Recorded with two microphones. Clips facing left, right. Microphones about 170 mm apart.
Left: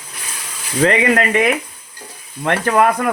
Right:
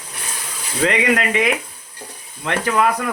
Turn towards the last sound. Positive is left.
turn(degrees=55)  # may be behind; listen again after turning